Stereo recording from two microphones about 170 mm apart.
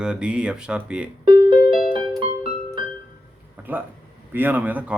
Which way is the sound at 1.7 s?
55° left (ahead or behind).